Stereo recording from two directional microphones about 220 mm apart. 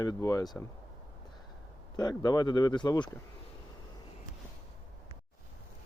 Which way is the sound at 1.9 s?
20° left (ahead or behind).